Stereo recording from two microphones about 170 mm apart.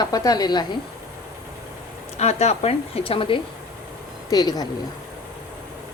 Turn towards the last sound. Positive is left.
turn(degrees=25)  # may be behind; listen again after turning